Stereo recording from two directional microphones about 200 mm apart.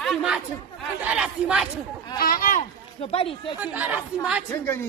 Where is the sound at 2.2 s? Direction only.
45° left (ahead or behind).